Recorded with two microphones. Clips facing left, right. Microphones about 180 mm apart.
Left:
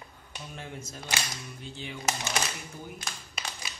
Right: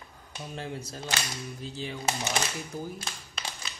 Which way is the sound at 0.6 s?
35° right (ahead or behind).